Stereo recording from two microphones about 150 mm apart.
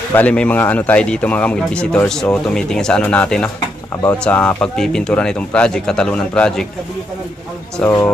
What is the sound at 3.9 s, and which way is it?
Speech, 20° left (ahead or behind).